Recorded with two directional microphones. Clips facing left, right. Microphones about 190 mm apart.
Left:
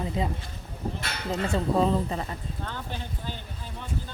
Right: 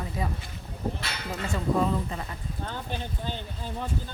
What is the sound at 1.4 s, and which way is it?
Speech, 35° left (ahead or behind).